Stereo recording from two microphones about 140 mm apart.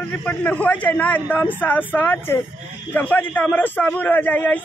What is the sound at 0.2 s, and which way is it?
A man's voice, 10° left (ahead or behind).